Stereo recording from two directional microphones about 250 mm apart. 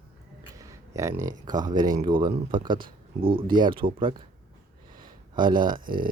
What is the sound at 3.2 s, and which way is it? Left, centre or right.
Speech, centre.